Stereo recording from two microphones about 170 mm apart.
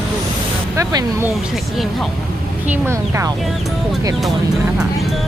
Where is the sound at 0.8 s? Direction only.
20° right (ahead or behind).